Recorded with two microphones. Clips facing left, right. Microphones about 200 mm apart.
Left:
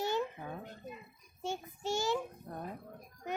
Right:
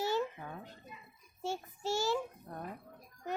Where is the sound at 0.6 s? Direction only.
50° left (ahead or behind).